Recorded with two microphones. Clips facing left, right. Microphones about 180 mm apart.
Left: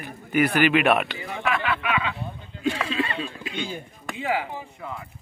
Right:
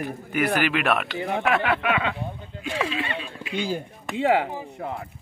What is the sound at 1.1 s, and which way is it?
Speech, 60° right (ahead or behind).